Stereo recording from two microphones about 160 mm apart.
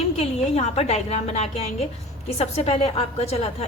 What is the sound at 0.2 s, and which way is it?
A woman's voice, 40° left (ahead or behind).